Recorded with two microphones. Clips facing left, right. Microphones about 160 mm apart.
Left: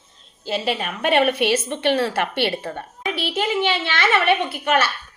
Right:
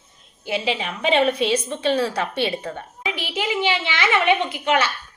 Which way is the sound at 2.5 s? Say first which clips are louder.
Left 1 dB; 10° right (ahead or behind).